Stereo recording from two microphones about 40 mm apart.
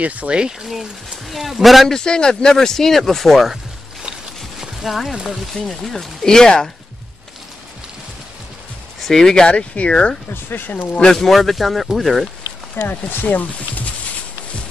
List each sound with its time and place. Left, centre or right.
0.0 s speech: right
0.3 s speech: centre
1.2 s speech: centre
1.9 s speech: centre
4.6 s a sound: centre
5.7 s speech: centre
6.2 s speech: centre
9.0 s speech: centre
9.5 s speech: left
10.5 s speech: left
11.1 s speech: centre
12.8 s speech: left